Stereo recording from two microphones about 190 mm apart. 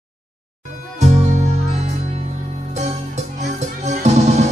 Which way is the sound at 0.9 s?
40° right (ahead or behind).